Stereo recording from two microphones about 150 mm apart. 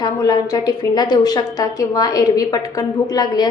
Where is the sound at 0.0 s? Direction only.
25° left (ahead or behind).